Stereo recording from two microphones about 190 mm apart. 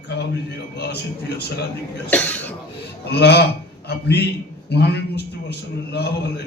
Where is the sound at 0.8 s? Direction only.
60° left (ahead or behind).